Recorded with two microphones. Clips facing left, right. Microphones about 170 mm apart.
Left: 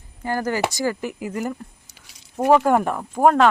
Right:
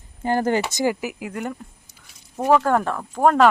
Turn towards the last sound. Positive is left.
turn(degrees=15)  # may be behind; listen again after turning